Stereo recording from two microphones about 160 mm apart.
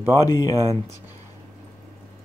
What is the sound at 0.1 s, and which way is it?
Speech, 25° left (ahead or behind).